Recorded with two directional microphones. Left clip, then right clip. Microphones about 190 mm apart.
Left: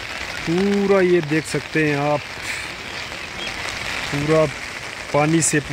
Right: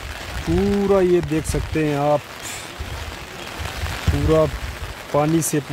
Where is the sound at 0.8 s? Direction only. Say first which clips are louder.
Even; 5° right (ahead or behind).